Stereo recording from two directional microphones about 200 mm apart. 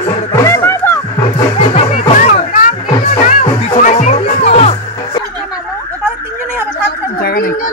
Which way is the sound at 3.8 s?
35° left (ahead or behind).